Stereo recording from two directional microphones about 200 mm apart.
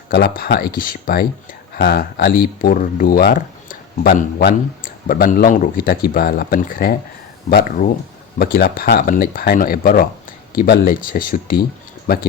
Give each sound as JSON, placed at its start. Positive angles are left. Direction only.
{"t": 0.1, "sound": "speech", "side_deg": 55}
{"t": 8.4, "sound": "speech", "side_deg": 50}